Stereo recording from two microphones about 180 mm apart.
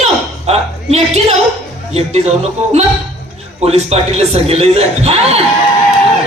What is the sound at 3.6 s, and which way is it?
A man's voice, 35° right (ahead or behind).